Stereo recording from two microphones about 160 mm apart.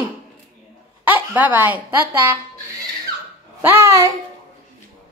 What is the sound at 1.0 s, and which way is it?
Speech, 10° right (ahead or behind).